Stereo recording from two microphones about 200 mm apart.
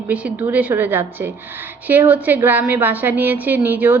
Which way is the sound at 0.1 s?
5° right (ahead or behind).